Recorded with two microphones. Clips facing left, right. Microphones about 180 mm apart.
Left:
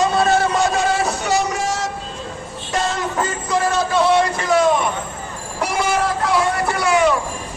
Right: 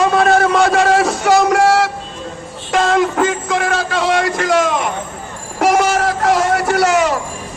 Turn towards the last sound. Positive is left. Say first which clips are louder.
# right 3 dB
turn(degrees=-80)